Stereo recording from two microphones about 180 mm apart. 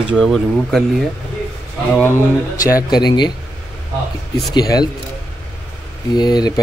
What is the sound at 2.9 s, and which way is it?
Speech, 25° left (ahead or behind).